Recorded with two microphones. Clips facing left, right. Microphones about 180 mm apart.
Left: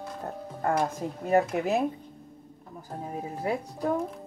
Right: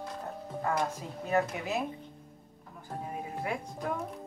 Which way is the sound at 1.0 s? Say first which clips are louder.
Left 8 dB; 50° left (ahead or behind).